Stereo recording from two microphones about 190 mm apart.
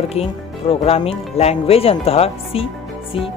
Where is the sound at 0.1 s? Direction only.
35° left (ahead or behind).